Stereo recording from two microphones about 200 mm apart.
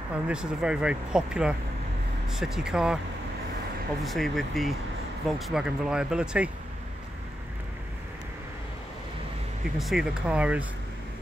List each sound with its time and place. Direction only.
0.1 s speech: 5° right (ahead or behind)
4.0 s speech: centre (ahead or behind)
9.8 s speech: centre (ahead or behind)